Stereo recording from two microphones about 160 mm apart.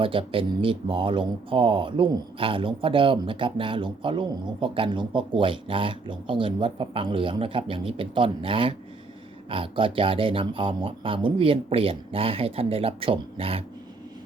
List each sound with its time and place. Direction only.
0.0 s speech: 35° right (ahead or behind)